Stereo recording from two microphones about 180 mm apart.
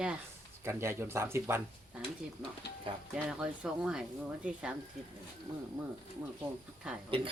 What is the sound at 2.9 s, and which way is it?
Speech, 30° right (ahead or behind).